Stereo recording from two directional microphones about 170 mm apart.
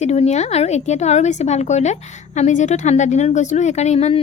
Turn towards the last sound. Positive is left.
turn(degrees=40)  # may be behind; listen again after turning